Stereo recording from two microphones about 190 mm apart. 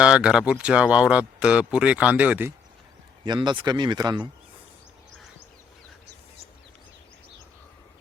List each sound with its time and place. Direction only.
0.0 s speech: 5° right (ahead or behind)
3.2 s speech: 25° right (ahead or behind)